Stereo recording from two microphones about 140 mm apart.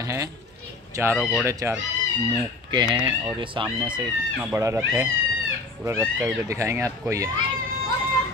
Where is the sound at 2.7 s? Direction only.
35° right (ahead or behind).